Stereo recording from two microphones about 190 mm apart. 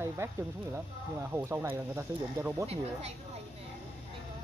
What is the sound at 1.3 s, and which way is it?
Speech, 15° right (ahead or behind).